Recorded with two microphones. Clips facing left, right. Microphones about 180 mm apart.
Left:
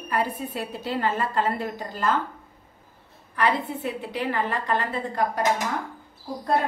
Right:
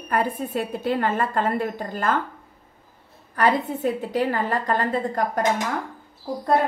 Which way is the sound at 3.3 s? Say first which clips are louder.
Right 3 dB; 40° right (ahead or behind).